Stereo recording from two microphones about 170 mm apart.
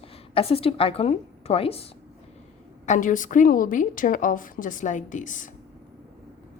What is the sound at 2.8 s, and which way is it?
A woman's voice, 45° left (ahead or behind).